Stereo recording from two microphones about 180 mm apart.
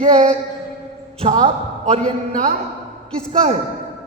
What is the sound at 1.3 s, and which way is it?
A man's voice, 30° right (ahead or behind).